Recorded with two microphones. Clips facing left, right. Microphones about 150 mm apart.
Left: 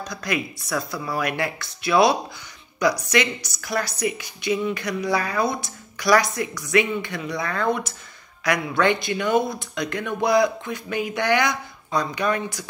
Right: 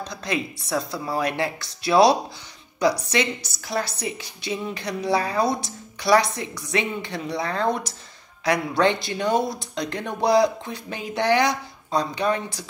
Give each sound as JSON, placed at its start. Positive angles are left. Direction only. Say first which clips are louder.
{"t": 0.1, "sound": "a woman's voice", "louder": "left 1 dB", "side_deg": -30}